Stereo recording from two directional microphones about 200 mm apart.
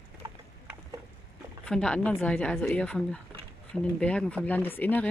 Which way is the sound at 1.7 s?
5° left (ahead or behind).